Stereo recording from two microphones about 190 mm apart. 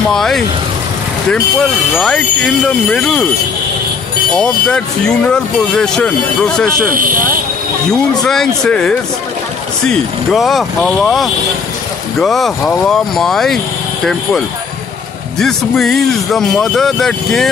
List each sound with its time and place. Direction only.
0.1 s speech: centre (ahead or behind)
2.0 s speech: 5° left (ahead or behind)
4.3 s speech: 5° left (ahead or behind)
6.7 s speech: 45° right (ahead or behind)
7.9 s speech: 5° left (ahead or behind)
15.3 s speech: centre (ahead or behind)